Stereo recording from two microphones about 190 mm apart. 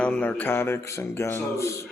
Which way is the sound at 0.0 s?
10° left (ahead or behind).